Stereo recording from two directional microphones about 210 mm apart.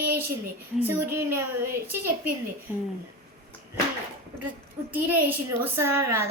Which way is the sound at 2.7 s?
10° right (ahead or behind).